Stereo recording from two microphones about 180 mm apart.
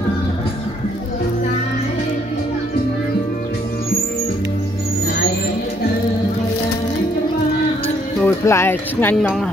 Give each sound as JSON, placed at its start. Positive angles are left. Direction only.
{"t": 8.3, "sound": "speech", "side_deg": 15}